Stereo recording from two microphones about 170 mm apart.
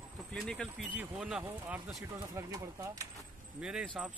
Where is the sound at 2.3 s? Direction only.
20° right (ahead or behind).